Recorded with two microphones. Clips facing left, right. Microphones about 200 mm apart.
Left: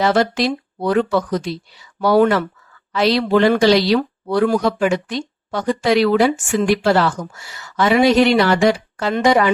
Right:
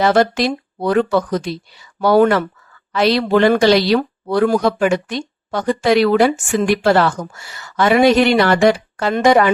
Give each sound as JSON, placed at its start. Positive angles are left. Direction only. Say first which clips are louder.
{"t": 0.0, "sound": "speech", "louder": "right 2 dB", "side_deg": -50}